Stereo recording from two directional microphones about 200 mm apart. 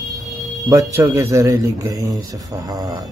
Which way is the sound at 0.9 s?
15° right (ahead or behind).